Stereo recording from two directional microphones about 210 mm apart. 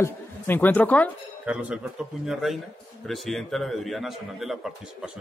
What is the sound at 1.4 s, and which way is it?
A man's voice, 5° right (ahead or behind).